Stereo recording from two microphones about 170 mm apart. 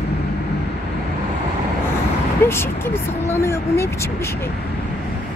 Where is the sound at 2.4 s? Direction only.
15° left (ahead or behind).